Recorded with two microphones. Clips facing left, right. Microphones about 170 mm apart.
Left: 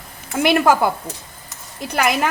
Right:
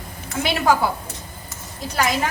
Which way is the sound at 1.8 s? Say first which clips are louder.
Left 3 dB; 60° left (ahead or behind).